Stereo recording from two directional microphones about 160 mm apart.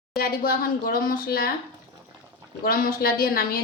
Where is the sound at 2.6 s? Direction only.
70° left (ahead or behind).